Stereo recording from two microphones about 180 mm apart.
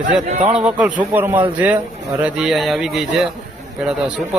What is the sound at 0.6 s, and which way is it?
A man's voice, 5° right (ahead or behind).